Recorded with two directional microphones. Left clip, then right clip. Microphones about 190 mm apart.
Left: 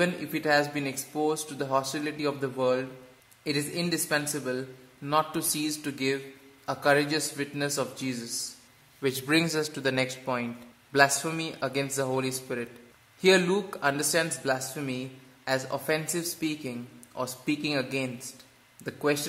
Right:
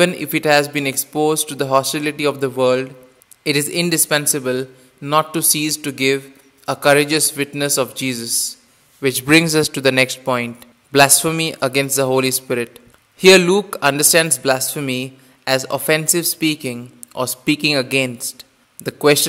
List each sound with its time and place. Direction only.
0.0 s a man's voice: 45° right (ahead or behind)